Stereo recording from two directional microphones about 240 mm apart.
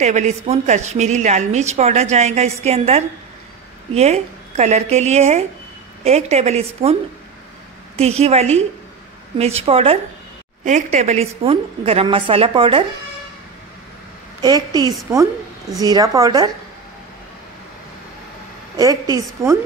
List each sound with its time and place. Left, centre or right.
0.0 s a woman's voice: right
14.4 s a woman's voice: centre
19.4 s a woman's voice: centre